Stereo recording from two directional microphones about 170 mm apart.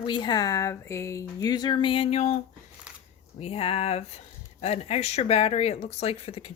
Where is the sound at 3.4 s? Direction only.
35° left (ahead or behind).